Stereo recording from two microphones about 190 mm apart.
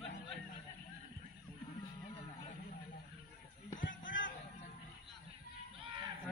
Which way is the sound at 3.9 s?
80° left.